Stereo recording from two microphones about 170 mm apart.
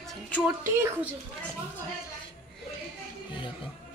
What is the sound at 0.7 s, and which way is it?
Speech, 15° right (ahead or behind).